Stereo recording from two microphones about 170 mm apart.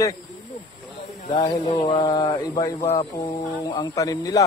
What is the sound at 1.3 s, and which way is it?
A man's voice, 25° left (ahead or behind).